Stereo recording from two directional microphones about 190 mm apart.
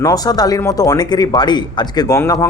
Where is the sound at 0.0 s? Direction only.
20° left (ahead or behind).